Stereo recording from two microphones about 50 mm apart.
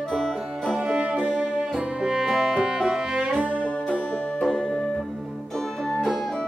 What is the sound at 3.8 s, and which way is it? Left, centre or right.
Music, left.